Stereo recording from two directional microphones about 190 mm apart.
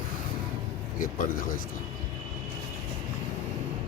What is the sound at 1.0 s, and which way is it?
Speech, 45° left (ahead or behind).